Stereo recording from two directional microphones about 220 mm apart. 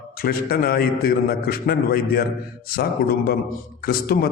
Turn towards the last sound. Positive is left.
turn(degrees=40)  # may be behind; listen again after turning